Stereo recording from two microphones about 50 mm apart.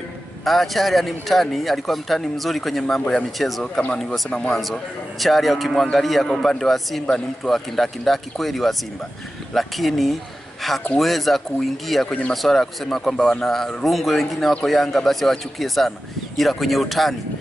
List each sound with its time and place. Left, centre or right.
0.5 s speech: centre
4.3 s speech: left
5.2 s speech: centre